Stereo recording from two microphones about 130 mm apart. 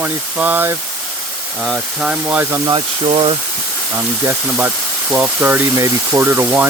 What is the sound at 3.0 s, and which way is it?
Speech, 45° right (ahead or behind).